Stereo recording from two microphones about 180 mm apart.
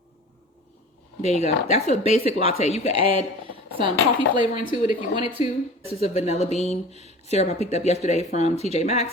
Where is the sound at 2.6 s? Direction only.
35° left (ahead or behind).